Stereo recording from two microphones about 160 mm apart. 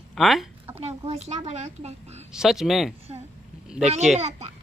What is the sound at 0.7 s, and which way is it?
Speech, 40° right (ahead or behind).